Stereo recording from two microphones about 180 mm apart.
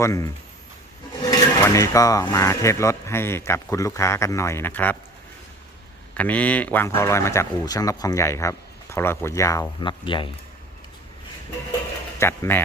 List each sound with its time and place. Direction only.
0.0 s speech: 15° left (ahead or behind)
6.1 s speech: 10° left (ahead or behind); by 10.2 s 25° left (ahead or behind)
12.2 s speech: 15° left (ahead or behind)